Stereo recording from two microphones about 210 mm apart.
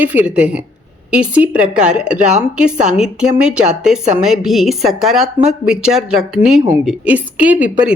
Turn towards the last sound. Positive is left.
turn(degrees=-5)  # may be behind; listen again after turning